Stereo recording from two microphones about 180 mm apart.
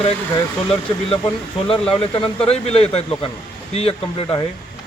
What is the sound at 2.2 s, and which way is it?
Speech, 35° left (ahead or behind).